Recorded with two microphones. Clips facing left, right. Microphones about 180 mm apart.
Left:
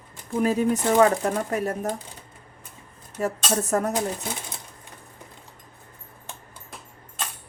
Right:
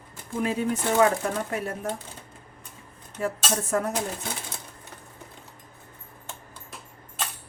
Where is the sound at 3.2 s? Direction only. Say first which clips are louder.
Left 3 dB; 40° left (ahead or behind).